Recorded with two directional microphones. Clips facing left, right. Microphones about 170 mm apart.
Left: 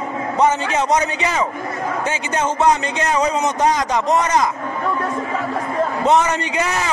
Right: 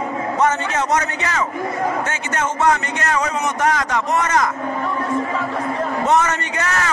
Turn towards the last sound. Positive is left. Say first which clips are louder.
# left 2 dB
turn(degrees=15)  # may be behind; listen again after turning